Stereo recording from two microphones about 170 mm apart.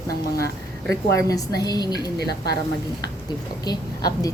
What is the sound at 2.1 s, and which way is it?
Speech, 70° right (ahead or behind).